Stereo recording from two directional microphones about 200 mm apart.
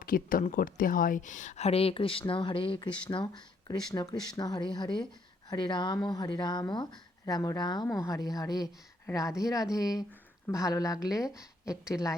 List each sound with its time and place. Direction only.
0.0 s a woman's voice: 45° left (ahead or behind); by 11.8 s 15° left (ahead or behind)